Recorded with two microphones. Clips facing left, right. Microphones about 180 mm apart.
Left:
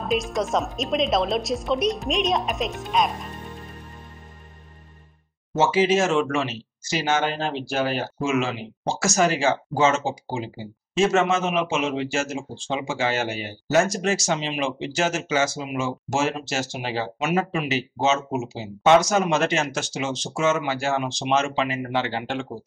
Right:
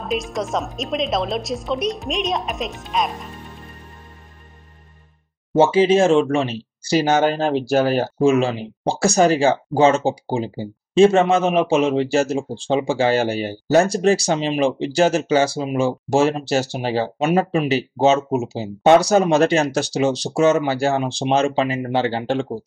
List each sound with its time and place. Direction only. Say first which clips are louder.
0.0 s a woman's voice: even; centre (ahead or behind)
5.6 s speech: right 6 dB; 30° right (ahead or behind)